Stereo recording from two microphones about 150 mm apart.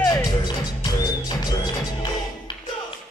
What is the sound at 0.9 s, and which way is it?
Music, 25° left (ahead or behind).